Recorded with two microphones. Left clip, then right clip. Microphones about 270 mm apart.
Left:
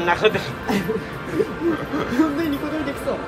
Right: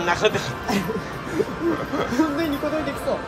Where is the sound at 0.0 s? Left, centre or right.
Centre.